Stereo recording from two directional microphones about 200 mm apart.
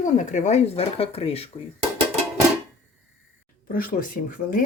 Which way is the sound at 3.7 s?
45° left (ahead or behind).